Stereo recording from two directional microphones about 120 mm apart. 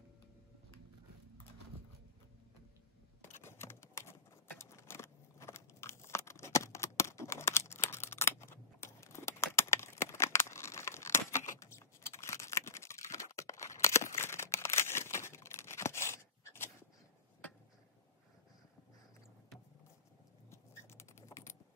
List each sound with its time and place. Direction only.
3.3 s typing: 20° left (ahead or behind)
14.1 s tearing: 20° left (ahead or behind)
21.0 s typing: 25° left (ahead or behind)